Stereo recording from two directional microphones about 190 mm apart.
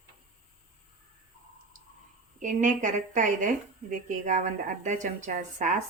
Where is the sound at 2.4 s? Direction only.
40° right (ahead or behind).